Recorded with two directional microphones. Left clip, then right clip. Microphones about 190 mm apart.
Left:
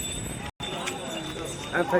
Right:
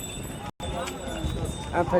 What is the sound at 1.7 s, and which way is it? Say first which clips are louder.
Speech: right 1 dB; 55° right (ahead or behind).